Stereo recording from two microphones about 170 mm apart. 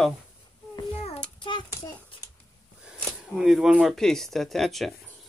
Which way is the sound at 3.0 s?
Centre (ahead or behind).